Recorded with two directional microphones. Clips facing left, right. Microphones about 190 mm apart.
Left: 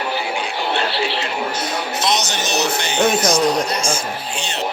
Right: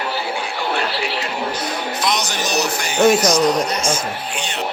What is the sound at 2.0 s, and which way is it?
Speech, 25° left (ahead or behind).